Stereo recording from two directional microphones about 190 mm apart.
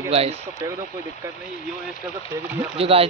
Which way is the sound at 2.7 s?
30° right (ahead or behind).